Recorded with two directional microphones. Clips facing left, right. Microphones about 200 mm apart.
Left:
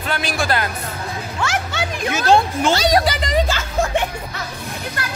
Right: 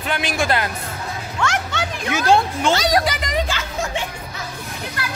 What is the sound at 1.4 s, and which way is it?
Speech, 5° left (ahead or behind).